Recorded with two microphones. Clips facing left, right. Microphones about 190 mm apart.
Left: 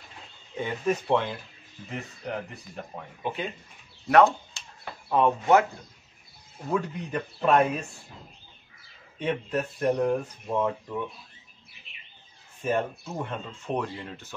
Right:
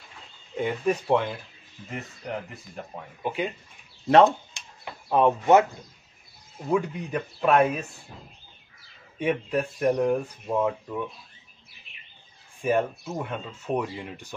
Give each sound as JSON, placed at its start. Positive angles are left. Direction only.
{"t": 0.6, "sound": "speech", "side_deg": -10}
{"t": 2.7, "sound": "speech", "side_deg": -10}
{"t": 4.1, "sound": "speech", "side_deg": -20}
{"t": 6.7, "sound": "speech", "side_deg": -5}
{"t": 9.2, "sound": "speech", "side_deg": -10}
{"t": 12.6, "sound": "speech", "side_deg": -10}